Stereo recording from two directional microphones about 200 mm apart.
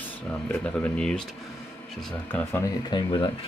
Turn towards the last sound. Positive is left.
turn(degrees=25)  # may be behind; listen again after turning